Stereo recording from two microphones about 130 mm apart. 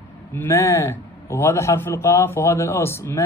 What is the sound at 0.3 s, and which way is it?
A man's voice, 20° left (ahead or behind).